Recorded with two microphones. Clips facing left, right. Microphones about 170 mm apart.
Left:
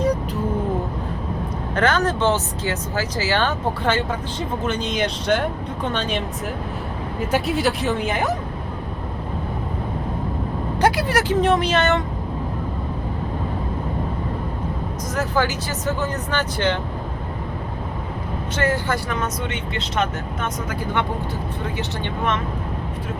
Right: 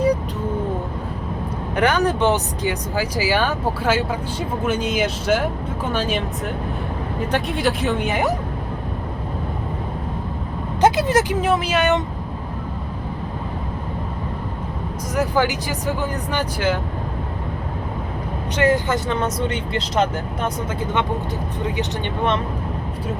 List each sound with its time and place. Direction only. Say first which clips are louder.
1.7 s speech: right 1 dB; 15° right (ahead or behind)
7.3 s speech: left 1 dB; 5° left (ahead or behind)
10.8 s speech: right 3 dB; 20° right (ahead or behind)
11.3 s speech: left 1 dB; 5° right (ahead or behind)
15.1 s speech: right 3 dB; 15° right (ahead or behind)
18.5 s speech: right 4 dB; 15° right (ahead or behind)